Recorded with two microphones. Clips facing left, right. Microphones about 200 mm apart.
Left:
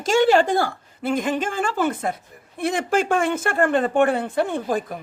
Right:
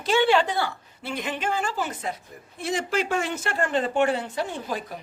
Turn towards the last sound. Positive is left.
turn(degrees=50)  # may be behind; listen again after turning